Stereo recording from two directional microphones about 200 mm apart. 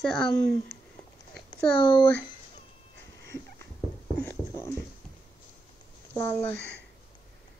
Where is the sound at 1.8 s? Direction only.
25° left (ahead or behind).